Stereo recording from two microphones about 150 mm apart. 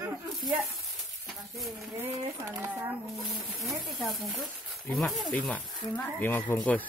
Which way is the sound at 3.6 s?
Centre (ahead or behind).